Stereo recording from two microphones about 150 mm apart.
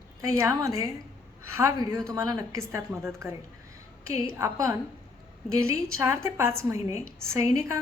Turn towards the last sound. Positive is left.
turn(degrees=-20)  # may be behind; listen again after turning